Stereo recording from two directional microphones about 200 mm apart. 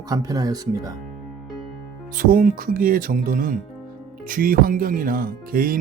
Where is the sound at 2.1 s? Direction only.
45° right (ahead or behind).